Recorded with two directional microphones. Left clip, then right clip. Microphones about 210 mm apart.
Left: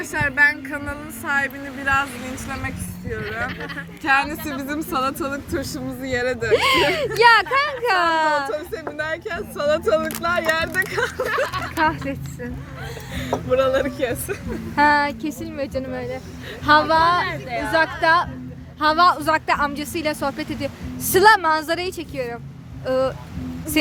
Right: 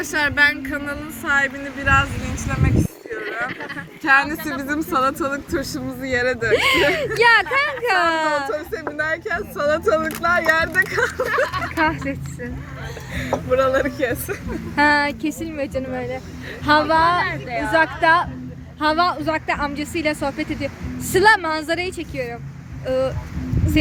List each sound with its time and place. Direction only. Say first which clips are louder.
0.0 s speech: right 2 dB; 40° right (ahead or behind)
0.6 s speech: right 3 dB; centre (ahead or behind)
11.3 s speech: right 2 dB; 55° left (ahead or behind)
11.9 s speech: even; 10° left (ahead or behind)
13.5 s speech: right 1 dB; 10° left (ahead or behind)